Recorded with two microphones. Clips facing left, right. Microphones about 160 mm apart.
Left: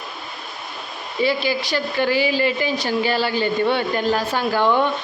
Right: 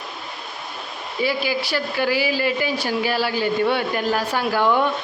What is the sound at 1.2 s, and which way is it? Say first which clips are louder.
Speech: left 2 dB; 10° right (ahead or behind).